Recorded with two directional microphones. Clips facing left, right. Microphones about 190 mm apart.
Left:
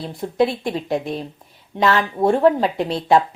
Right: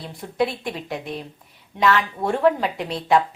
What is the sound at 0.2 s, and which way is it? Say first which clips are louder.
A woman's voice: left 4 dB; 30° left (ahead or behind).